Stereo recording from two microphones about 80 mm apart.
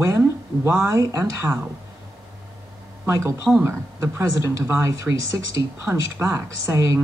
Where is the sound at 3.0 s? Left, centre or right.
Right.